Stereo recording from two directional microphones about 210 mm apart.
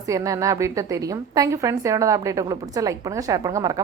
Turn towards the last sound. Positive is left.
turn(degrees=-15)  # may be behind; listen again after turning